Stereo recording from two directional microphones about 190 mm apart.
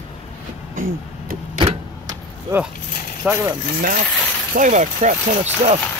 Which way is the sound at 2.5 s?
15° right (ahead or behind).